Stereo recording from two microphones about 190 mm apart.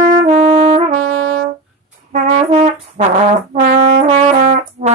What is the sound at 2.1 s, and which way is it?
Brass instrument, 40° right (ahead or behind).